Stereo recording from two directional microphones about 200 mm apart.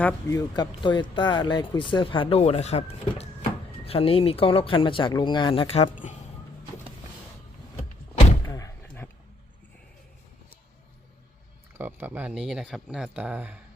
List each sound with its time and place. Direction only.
0.0 s speech: 15° left (ahead or behind); by 6.1 s 35° left (ahead or behind)
8.4 s slam: 15° left (ahead or behind)
11.8 s speech: 10° right (ahead or behind)